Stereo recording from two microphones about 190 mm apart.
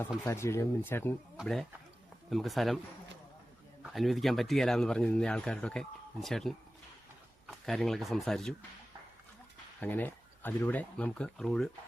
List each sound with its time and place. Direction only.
0.3 s speech: 15° left (ahead or behind)
1.4 s a man's voice: centre (ahead or behind)
3.8 s a man's voice: centre (ahead or behind)
9.8 s speech: 10° left (ahead or behind)